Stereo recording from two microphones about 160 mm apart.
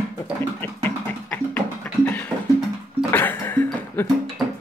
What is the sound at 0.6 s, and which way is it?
Music, 10° left (ahead or behind).